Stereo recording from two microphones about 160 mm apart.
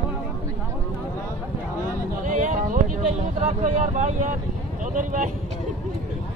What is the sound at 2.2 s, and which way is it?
Speech, 50° right (ahead or behind).